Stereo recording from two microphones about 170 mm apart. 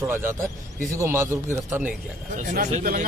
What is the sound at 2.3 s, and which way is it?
Speech, 50° right (ahead or behind).